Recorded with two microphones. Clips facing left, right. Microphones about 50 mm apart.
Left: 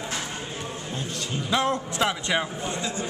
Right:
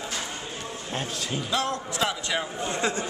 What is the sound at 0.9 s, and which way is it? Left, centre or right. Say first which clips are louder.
Speech: right 2 dB; right.